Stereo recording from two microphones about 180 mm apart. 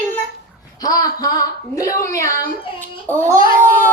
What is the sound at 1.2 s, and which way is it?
Speech, 20° left (ahead or behind).